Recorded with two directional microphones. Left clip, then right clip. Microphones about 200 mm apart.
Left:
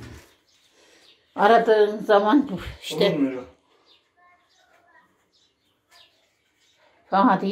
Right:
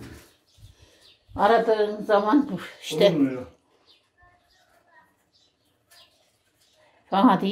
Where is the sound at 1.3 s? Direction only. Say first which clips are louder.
Left 3 dB; 20° left (ahead or behind).